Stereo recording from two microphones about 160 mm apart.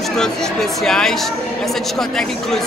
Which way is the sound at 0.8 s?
5° left (ahead or behind).